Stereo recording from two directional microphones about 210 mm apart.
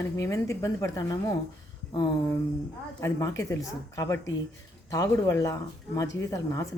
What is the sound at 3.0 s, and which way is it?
Speech, 15° left (ahead or behind).